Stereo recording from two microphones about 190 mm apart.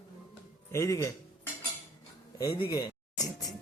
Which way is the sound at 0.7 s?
15° left (ahead or behind).